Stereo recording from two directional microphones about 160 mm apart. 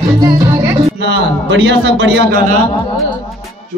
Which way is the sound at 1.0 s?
90° right.